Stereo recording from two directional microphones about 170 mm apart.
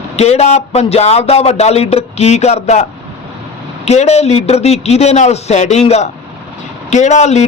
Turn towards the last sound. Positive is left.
turn(degrees=40)  # may be behind; listen again after turning